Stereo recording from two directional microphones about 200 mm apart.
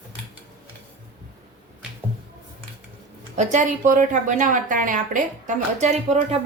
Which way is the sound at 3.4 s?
40° right (ahead or behind).